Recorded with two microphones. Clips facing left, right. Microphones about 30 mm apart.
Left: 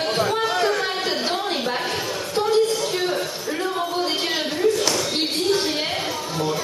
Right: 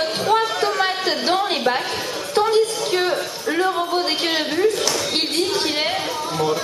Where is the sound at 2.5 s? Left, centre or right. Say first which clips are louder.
Left 2 dB; right.